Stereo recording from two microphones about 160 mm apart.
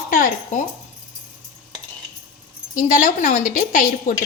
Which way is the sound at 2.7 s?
55° left (ahead or behind).